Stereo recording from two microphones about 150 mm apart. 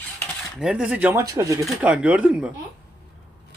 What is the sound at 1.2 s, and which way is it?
Speech, 20° right (ahead or behind).